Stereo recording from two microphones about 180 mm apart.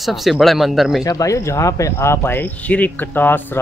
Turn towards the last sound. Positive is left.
turn(degrees=10)  # may be behind; listen again after turning